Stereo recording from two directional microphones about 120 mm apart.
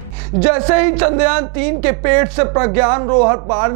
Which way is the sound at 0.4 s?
10° right (ahead or behind).